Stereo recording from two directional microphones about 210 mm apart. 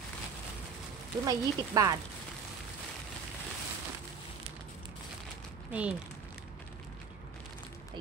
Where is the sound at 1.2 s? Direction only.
15° right (ahead or behind).